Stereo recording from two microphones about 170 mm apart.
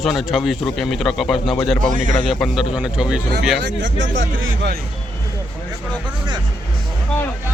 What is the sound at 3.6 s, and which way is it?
Speech, 90° right.